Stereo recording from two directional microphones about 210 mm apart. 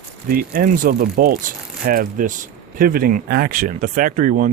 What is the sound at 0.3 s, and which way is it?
Speech, 45° right (ahead or behind).